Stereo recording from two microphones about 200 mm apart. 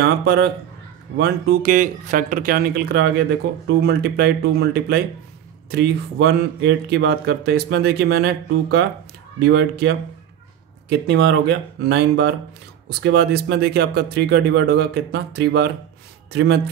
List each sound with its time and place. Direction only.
0.0 s speech: 50° right (ahead or behind)
6.9 s speech: 65° right (ahead or behind)